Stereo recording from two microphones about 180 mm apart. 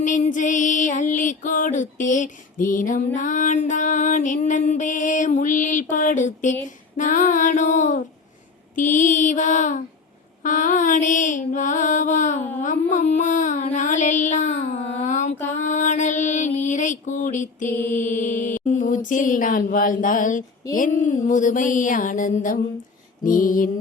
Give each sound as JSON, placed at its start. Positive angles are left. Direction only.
{"t": 0.0, "sound": "music", "side_deg": 45}
{"t": 12.6, "sound": "child singing", "side_deg": 45}
{"t": 15.5, "sound": "music", "side_deg": 45}